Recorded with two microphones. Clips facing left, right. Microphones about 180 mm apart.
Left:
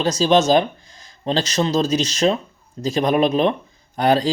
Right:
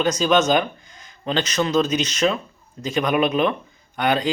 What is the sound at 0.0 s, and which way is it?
Speech, 30° left (ahead or behind).